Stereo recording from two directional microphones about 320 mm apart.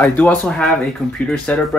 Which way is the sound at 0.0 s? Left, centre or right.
Centre.